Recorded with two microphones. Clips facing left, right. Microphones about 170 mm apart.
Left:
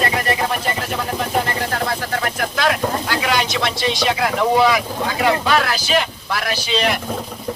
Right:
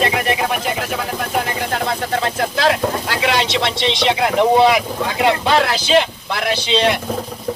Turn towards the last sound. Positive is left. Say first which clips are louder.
# right 3 dB
turn(degrees=-25)  # may be behind; listen again after turning